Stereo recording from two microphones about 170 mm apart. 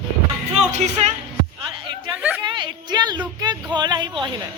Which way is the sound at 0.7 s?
40° right (ahead or behind).